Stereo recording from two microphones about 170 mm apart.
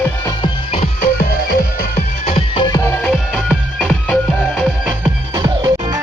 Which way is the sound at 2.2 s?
35° left (ahead or behind).